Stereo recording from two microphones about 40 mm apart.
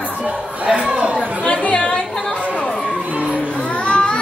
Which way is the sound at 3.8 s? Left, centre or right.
Left.